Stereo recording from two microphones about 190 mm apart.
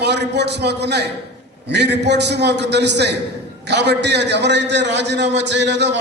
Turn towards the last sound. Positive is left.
turn(degrees=-65)  # may be behind; listen again after turning